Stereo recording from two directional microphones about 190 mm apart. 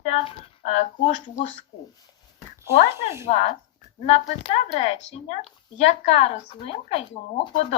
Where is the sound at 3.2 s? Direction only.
35° left (ahead or behind).